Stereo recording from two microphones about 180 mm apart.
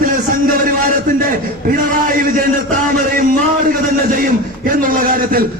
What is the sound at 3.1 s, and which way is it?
A man's voice, 50° right (ahead or behind).